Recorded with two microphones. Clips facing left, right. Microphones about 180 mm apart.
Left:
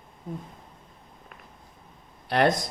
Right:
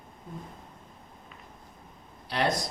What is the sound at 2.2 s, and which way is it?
Speech, 55° left (ahead or behind).